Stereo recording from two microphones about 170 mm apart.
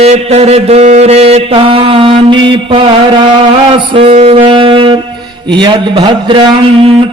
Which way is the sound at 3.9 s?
35° right (ahead or behind).